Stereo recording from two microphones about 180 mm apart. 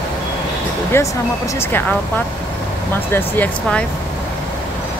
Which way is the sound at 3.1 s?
10° left (ahead or behind).